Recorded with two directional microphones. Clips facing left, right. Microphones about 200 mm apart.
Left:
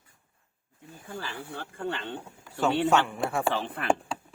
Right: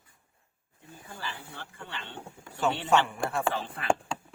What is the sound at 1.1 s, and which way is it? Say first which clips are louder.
Speech: left 5 dB; 55° left (ahead or behind).